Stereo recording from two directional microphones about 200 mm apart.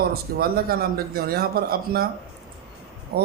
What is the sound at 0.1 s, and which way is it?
A man's voice, 50° right (ahead or behind).